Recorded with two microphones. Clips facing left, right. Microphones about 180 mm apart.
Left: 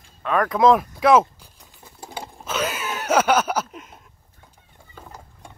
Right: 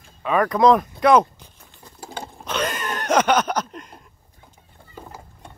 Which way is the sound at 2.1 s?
5° left (ahead or behind).